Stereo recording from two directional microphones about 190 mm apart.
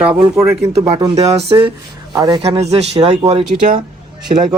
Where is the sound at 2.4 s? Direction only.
30° right (ahead or behind).